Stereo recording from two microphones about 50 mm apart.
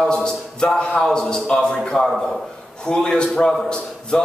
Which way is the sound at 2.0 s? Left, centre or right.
Centre.